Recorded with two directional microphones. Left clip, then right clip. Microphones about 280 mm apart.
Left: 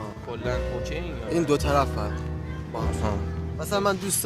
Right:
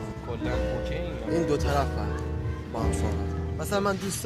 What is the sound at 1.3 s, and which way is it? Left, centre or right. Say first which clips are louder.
Speech: left 4 dB; left.